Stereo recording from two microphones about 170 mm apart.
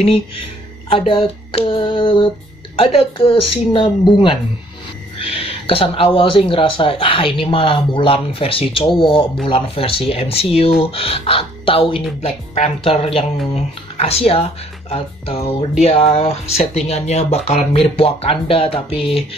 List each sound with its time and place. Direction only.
0.0 s speech: 35° left (ahead or behind)